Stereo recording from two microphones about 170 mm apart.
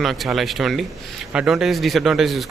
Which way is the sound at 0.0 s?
Centre (ahead or behind).